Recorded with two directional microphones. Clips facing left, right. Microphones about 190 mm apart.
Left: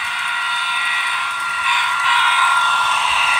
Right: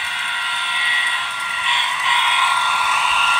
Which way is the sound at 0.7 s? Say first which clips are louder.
Left 1 dB; 25° right (ahead or behind).